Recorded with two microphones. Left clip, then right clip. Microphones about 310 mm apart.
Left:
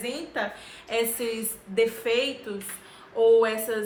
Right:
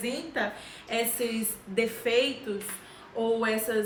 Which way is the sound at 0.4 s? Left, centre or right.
Centre.